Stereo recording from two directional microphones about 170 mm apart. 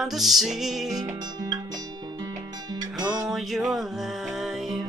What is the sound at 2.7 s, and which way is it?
Music, 20° right (ahead or behind).